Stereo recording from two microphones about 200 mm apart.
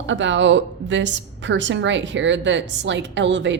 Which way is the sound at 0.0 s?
65° right (ahead or behind).